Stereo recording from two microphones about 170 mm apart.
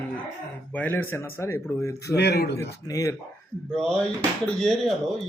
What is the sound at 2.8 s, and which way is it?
Speech, 20° left (ahead or behind).